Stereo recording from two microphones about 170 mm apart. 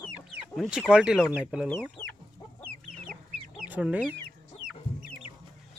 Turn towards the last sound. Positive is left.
turn(degrees=-10)  # may be behind; listen again after turning